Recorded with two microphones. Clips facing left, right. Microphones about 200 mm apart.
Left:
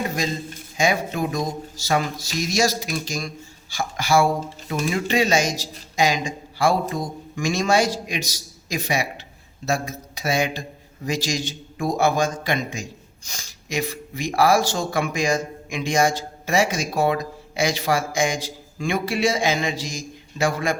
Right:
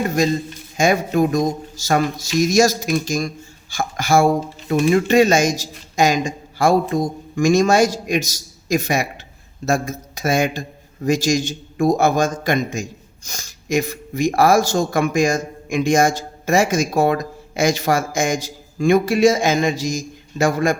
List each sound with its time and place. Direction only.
0.8 s a man's voice: 50° right (ahead or behind)